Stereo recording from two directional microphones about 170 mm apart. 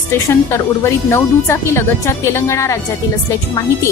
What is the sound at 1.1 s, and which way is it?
Speech, 15° left (ahead or behind).